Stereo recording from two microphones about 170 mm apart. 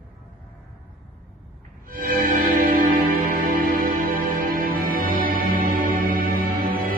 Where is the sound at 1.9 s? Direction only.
60° right (ahead or behind).